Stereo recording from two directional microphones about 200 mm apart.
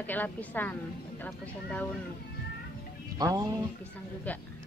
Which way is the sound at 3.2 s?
15° right (ahead or behind).